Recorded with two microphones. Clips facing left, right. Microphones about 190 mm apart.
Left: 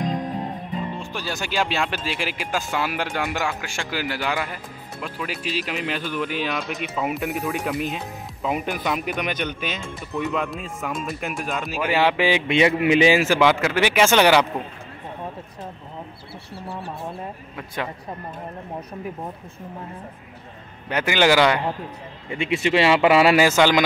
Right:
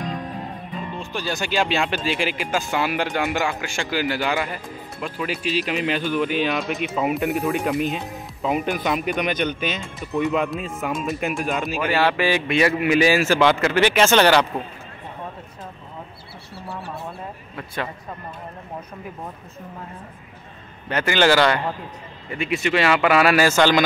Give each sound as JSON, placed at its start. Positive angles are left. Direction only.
{"t": 0.0, "sound": "music", "side_deg": 20}
{"t": 1.1, "sound": "speech", "side_deg": 5}
{"t": 11.9, "sound": "a man's voice", "side_deg": 15}
{"t": 20.9, "sound": "a man's voice", "side_deg": 15}
{"t": 22.3, "sound": "speech", "side_deg": 25}